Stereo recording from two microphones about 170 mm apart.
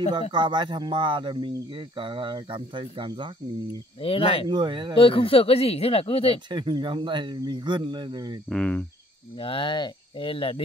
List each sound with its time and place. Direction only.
0.3 s speech: 25° right (ahead or behind)
4.0 s speech: 35° left (ahead or behind)
4.5 s speech: 25° right (ahead or behind)
4.9 s speech: 30° left (ahead or behind)
6.5 s speech: 30° right (ahead or behind)
8.5 s cricket: 5° left (ahead or behind)
9.4 s speech: 30° left (ahead or behind)